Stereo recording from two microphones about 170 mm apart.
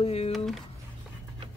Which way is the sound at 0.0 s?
35° left (ahead or behind).